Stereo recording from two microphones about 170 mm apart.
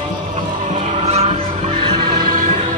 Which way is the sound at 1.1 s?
35° right (ahead or behind).